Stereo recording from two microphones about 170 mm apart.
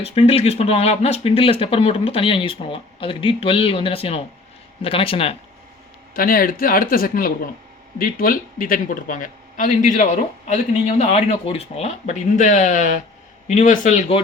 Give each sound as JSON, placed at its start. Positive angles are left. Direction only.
{"t": 0.0, "sound": "speech", "side_deg": 35}
{"t": 6.1, "sound": "speech", "side_deg": 55}